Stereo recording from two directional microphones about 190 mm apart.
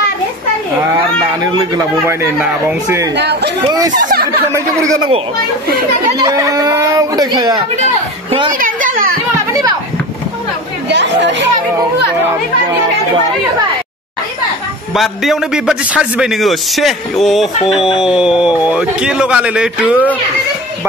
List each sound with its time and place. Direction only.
1.4 s speech: 15° right (ahead or behind)
3.2 s speech: 60° right (ahead or behind)
3.9 s speech: 45° right (ahead or behind)
4.5 s speech: 15° right (ahead or behind)
6.1 s speech: 20° right (ahead or behind)
8.5 s a sound: 45° right (ahead or behind)
9.5 s a sound: 20° right (ahead or behind)
10.9 s chatter: 65° right (ahead or behind)
15.0 s a man's voice: centre (ahead or behind)